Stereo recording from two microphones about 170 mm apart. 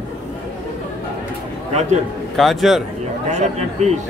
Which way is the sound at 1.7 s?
40° right (ahead or behind).